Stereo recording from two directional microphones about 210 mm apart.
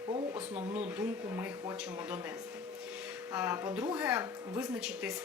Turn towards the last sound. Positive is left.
turn(degrees=-5)  # may be behind; listen again after turning